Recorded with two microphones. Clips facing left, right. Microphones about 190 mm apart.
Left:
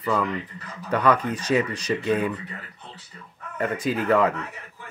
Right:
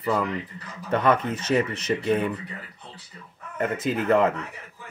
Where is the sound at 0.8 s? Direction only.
25° right (ahead or behind).